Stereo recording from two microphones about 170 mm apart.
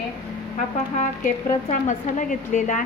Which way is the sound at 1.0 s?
45° left (ahead or behind).